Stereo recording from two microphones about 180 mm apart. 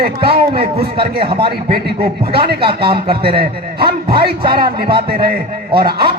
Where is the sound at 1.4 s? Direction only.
60° right (ahead or behind).